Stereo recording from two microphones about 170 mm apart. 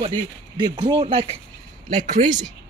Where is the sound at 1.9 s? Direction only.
45° right (ahead or behind).